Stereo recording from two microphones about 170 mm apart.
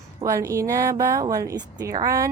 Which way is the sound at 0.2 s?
20° right (ahead or behind).